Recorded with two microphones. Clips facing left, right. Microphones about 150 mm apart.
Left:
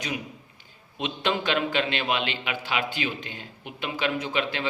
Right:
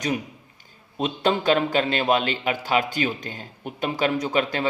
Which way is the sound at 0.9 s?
40° right (ahead or behind).